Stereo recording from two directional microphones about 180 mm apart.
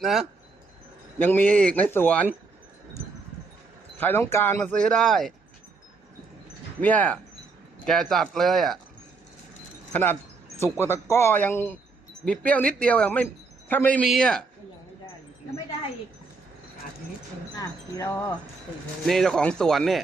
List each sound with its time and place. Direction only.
0.0 s speech: centre (ahead or behind)
1.2 s speech: 10° left (ahead or behind)
3.9 s speech: 10° left (ahead or behind)
6.8 s speech: 10° left (ahead or behind)
9.9 s speech: 10° left (ahead or behind)
17.5 s wind chime: 20° left (ahead or behind)
19.0 s speech: centre (ahead or behind)